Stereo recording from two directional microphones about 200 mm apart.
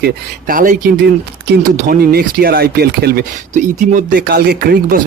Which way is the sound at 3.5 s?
40° right (ahead or behind).